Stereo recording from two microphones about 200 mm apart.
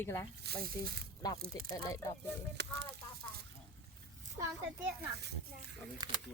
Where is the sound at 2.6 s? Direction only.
60° right (ahead or behind).